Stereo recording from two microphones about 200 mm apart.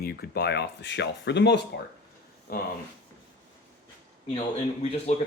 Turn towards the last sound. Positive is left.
turn(degrees=30)  # may be behind; listen again after turning